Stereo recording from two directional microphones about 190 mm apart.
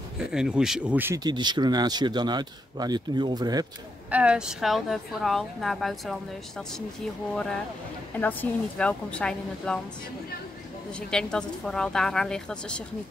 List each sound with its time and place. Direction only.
0.2 s a woman's voice: 5° right (ahead or behind)
1.2 s speech: 25° right (ahead or behind)
4.1 s a woman's voice: 5° right (ahead or behind)
7.3 s a woman's voice: 5° left (ahead or behind)
10.9 s a woman's voice: 5° left (ahead or behind)